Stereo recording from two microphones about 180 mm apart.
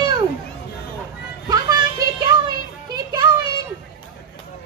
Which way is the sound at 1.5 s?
20° right (ahead or behind).